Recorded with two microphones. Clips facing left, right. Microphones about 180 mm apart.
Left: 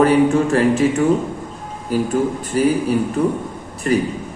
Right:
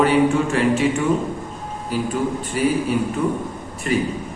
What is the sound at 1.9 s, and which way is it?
A man's voice, 45° left (ahead or behind).